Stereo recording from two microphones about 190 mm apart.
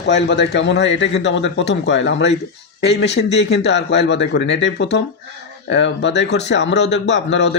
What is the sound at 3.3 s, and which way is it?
A man's voice, 65° left (ahead or behind).